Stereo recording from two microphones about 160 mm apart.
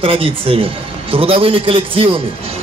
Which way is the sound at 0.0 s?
35° right (ahead or behind).